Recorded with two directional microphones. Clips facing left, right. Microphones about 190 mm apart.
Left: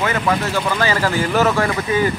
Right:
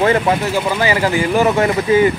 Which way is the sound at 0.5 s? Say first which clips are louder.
Right 3 dB; 15° right (ahead or behind).